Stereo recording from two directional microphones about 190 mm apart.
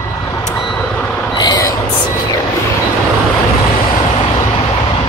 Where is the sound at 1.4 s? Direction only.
20° left (ahead or behind).